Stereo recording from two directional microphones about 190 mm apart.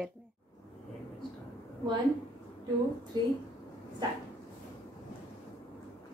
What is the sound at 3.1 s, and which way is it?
Speech, 20° right (ahead or behind).